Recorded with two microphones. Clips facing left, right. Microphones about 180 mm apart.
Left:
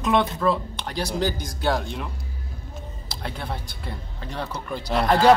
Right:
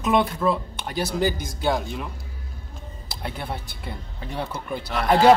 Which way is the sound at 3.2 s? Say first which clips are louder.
Right 1 dB; 5° right (ahead or behind).